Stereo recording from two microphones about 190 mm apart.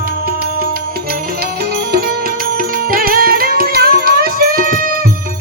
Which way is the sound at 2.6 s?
50° right (ahead or behind).